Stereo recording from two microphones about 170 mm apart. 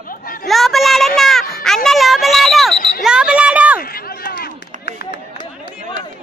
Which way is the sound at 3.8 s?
60° left (ahead or behind).